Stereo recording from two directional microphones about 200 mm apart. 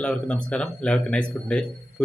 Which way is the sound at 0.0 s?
5° left (ahead or behind).